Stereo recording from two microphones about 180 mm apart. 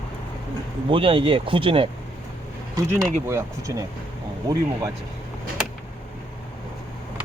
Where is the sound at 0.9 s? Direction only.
30° right (ahead or behind).